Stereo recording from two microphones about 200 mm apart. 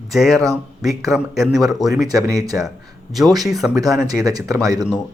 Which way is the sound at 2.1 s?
20° right (ahead or behind).